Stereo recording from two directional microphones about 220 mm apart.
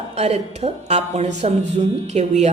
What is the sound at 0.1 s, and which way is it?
A woman's voice, 30° right (ahead or behind).